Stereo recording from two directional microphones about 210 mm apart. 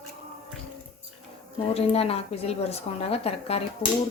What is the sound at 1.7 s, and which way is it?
Speech, 30° left (ahead or behind).